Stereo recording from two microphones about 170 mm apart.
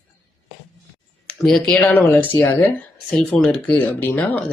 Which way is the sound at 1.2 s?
5° left (ahead or behind).